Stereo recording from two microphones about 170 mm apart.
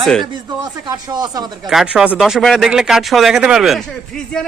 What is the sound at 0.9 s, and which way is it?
Speech, 25° right (ahead or behind).